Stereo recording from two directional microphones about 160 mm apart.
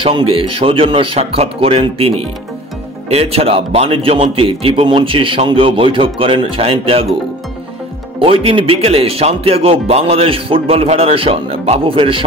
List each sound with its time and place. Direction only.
0.0 s a man's voice: 35° right (ahead or behind)
8.2 s a man's voice: 35° right (ahead or behind)